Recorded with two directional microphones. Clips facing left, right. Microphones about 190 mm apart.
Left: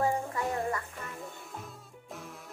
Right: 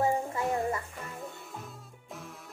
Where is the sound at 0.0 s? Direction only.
20° right (ahead or behind).